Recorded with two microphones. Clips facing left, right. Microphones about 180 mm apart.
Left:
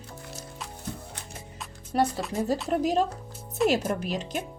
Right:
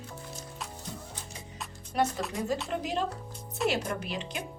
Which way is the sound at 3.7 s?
40° left (ahead or behind).